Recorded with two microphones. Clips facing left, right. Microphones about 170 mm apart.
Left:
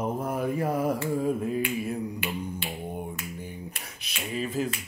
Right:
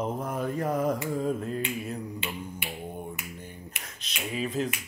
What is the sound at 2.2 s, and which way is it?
Finger snapping, 25° right (ahead or behind).